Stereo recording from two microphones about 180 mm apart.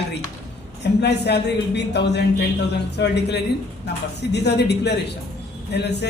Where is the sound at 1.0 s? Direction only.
70° left (ahead or behind).